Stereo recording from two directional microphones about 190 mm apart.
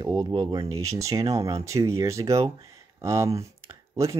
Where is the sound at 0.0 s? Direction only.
20° right (ahead or behind).